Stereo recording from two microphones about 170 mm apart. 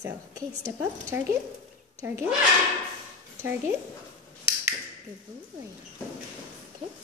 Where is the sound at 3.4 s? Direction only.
15° right (ahead or behind).